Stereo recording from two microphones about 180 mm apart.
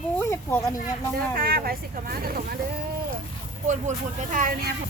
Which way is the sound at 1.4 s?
55° right (ahead or behind).